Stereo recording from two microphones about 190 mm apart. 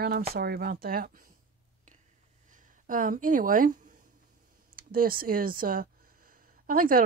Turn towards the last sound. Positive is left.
turn(degrees=-50)  # may be behind; listen again after turning